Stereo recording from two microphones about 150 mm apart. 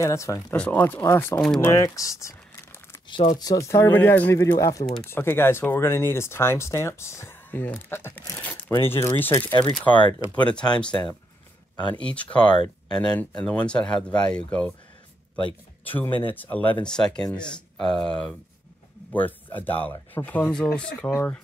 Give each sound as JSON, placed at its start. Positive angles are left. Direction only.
{"t": 0.0, "sound": "speech", "side_deg": 20}
{"t": 0.6, "sound": "speech", "side_deg": 10}
{"t": 1.7, "sound": "speech", "side_deg": 20}
{"t": 3.3, "sound": "speech", "side_deg": 25}
{"t": 9.5, "sound": "speech", "side_deg": 30}
{"t": 10.3, "sound": "speech", "side_deg": 10}
{"t": 11.7, "sound": "speech", "side_deg": 30}
{"t": 12.0, "sound": "speech", "side_deg": 10}
{"t": 12.4, "sound": "speech", "side_deg": 30}
{"t": 13.0, "sound": "speech", "side_deg": 5}
{"t": 21.1, "sound": "speech", "side_deg": 15}